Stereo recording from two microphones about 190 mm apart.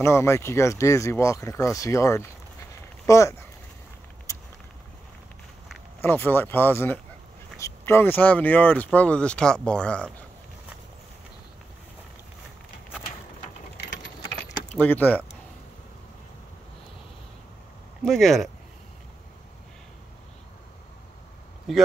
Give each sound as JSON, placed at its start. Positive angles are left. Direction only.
{"t": 0.0, "sound": "speech", "side_deg": 15}
{"t": 4.3, "sound": "a sound", "side_deg": 15}
{"t": 5.9, "sound": "speech", "side_deg": 10}
{"t": 14.8, "sound": "speech", "side_deg": 10}
{"t": 18.0, "sound": "speech", "side_deg": 0}
{"t": 21.7, "sound": "speech", "side_deg": 0}